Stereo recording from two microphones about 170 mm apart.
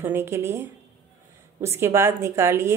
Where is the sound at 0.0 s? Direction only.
15° right (ahead or behind).